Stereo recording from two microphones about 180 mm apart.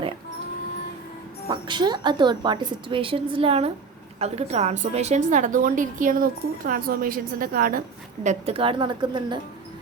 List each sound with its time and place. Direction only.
1.5 s a woman's voice: 25° right (ahead or behind); by 7.8 s 50° right (ahead or behind)
8.2 s a woman's voice: 35° right (ahead or behind)